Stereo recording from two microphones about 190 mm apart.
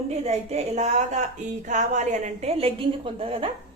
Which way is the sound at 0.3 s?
35° right (ahead or behind).